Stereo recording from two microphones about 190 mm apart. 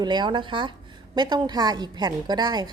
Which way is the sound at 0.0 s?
25° right (ahead or behind).